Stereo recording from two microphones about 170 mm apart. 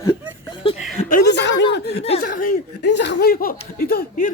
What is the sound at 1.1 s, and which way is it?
Chuckle, 75° left (ahead or behind).